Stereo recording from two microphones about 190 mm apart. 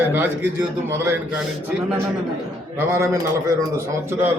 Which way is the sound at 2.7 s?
15° right (ahead or behind).